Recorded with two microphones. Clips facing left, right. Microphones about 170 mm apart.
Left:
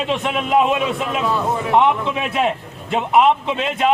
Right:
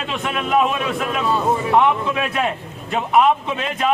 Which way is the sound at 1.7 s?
25° left (ahead or behind).